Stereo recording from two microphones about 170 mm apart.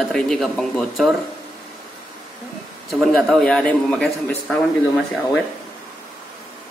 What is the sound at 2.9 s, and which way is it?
A man's voice, centre (ahead or behind).